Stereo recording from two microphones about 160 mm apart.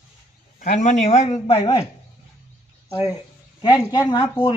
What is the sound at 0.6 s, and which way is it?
Speech, 50° left (ahead or behind).